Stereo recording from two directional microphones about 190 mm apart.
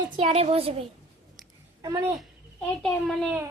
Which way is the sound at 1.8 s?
15° right (ahead or behind).